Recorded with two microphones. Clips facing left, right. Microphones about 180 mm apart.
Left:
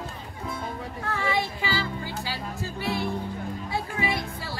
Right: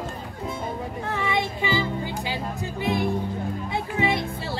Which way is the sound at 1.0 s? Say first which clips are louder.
Right 1 dB; 20° right (ahead or behind).